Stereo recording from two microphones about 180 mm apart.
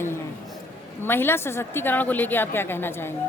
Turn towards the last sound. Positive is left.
turn(degrees=10)  # may be behind; listen again after turning